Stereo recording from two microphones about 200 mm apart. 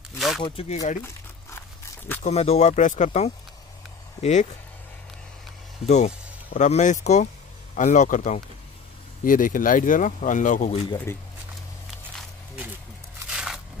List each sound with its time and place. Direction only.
0.4 s speech: 25° left (ahead or behind)
2.2 s speech: 30° left (ahead or behind)
5.9 s speech: 35° left (ahead or behind)
13.3 s a sound: 5° right (ahead or behind)